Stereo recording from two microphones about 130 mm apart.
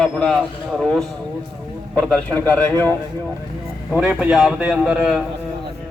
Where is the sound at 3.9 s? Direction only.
10° right (ahead or behind).